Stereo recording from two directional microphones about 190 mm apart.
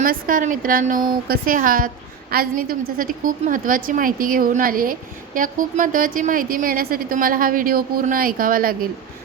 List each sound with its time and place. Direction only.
0.0 s a woman's voice: 45° right (ahead or behind)